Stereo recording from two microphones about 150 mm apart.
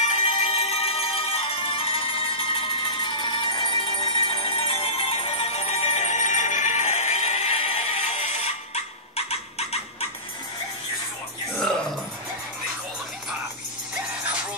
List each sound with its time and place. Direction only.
0.0 s music: 50° left (ahead or behind)
11.5 s music: 5° left (ahead or behind)